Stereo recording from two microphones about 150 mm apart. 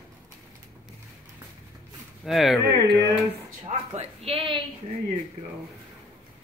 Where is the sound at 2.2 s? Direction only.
Centre (ahead or behind).